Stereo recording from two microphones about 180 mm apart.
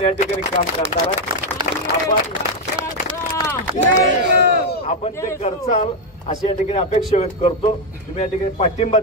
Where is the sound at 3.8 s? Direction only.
65° right (ahead or behind).